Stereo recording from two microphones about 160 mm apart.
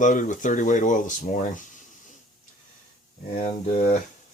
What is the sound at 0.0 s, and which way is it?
Speech, 55° left (ahead or behind).